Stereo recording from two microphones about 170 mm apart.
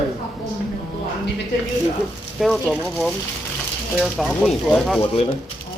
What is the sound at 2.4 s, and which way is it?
Speech, centre (ahead or behind).